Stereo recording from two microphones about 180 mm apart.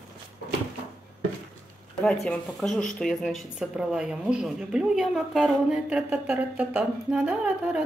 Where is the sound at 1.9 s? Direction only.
5° left (ahead or behind).